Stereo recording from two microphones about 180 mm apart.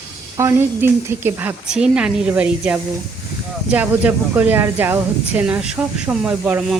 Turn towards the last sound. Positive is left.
turn(degrees=-5)  # may be behind; listen again after turning